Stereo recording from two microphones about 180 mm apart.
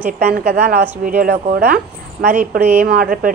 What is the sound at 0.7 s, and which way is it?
Speech, 55° right (ahead or behind).